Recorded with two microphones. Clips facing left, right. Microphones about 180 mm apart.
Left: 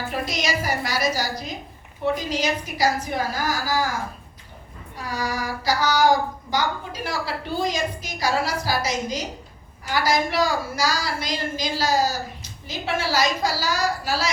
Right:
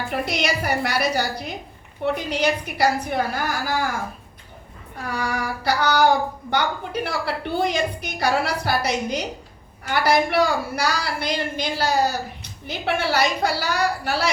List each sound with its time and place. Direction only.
0.3 s a woman's voice: 60° right (ahead or behind)
5.0 s a woman's voice: 60° right (ahead or behind)